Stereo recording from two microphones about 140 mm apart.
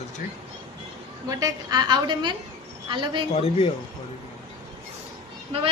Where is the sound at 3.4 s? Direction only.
45° left (ahead or behind).